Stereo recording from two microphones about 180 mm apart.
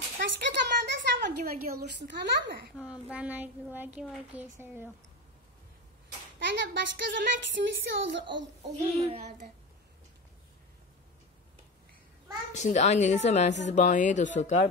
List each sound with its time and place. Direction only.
0.2 s a sound: 70° right (ahead or behind)
2.8 s speech: 5° right (ahead or behind)
6.4 s speech: 80° right
8.9 s child singing: 35° right (ahead or behind)
12.5 s a woman's voice: 40° left (ahead or behind)